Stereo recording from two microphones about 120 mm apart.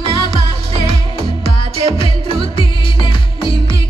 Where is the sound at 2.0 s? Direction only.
45° left (ahead or behind).